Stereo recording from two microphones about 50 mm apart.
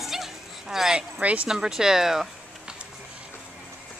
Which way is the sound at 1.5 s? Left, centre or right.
Centre.